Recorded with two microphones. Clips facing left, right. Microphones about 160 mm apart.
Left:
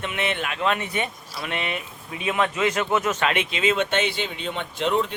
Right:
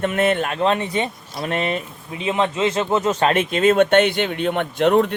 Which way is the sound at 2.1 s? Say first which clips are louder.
Right 3 dB; 25° right (ahead or behind).